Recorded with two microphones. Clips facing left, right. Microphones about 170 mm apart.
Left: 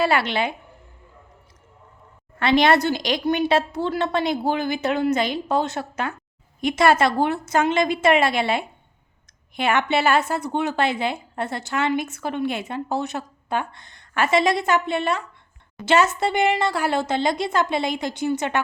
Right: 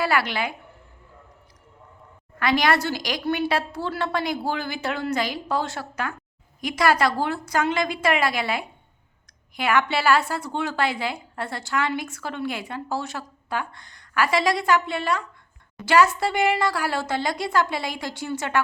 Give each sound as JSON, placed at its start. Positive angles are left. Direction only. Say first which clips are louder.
{"t": 0.0, "sound": "a woman's voice", "louder": "left 3 dB", "side_deg": 25}
{"t": 2.4, "sound": "a woman's voice", "louder": "left 4 dB", "side_deg": 25}